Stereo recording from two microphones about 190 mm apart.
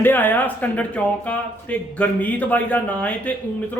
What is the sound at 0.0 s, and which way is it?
A man's voice, 10° left (ahead or behind).